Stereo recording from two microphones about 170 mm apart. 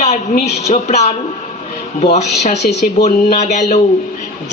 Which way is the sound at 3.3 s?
40° left (ahead or behind).